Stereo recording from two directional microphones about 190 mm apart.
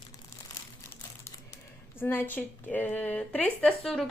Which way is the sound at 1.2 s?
15° left (ahead or behind).